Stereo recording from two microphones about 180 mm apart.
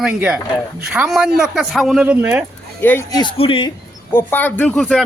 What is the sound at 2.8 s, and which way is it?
Speech, 15° left (ahead or behind).